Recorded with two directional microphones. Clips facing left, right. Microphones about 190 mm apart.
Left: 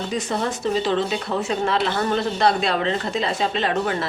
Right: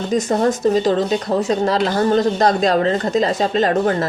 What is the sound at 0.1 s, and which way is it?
Speech, 40° right (ahead or behind).